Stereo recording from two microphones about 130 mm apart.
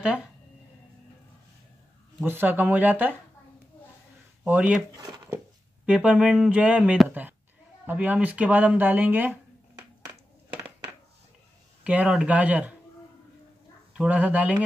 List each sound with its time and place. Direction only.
0.0 s speech: 5° right (ahead or behind)
2.2 s speech: 15° right (ahead or behind)
4.5 s speech: 10° right (ahead or behind)
4.9 s speech: 30° right (ahead or behind)
5.9 s speech: 10° right (ahead or behind)
11.8 s speech: 10° right (ahead or behind)
13.9 s speech: 10° right (ahead or behind)